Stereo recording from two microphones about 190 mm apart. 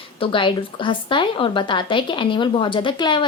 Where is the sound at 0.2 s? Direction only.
25° left (ahead or behind).